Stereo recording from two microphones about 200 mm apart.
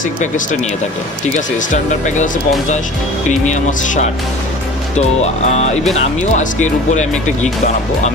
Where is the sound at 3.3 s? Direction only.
35° left (ahead or behind).